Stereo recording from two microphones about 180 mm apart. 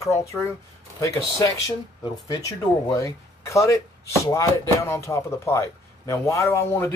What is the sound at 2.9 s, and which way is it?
Speech, 15° left (ahead or behind).